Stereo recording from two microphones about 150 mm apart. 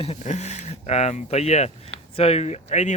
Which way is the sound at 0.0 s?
45° left (ahead or behind).